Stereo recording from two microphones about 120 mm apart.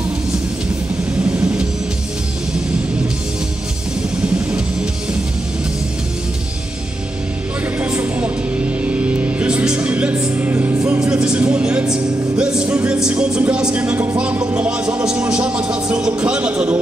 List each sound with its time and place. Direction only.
1.3 s music: 10° right (ahead or behind)
7.8 s music: 15° right (ahead or behind)
10.9 s music: 10° right (ahead or behind)